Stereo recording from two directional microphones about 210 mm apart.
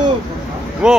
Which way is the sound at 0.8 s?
5° right (ahead or behind).